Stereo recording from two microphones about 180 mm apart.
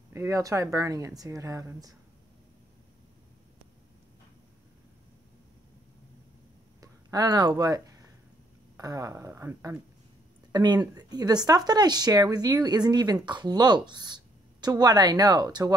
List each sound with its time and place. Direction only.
0.1 s speech: 15° right (ahead or behind)
6.8 s speech: 20° right (ahead or behind)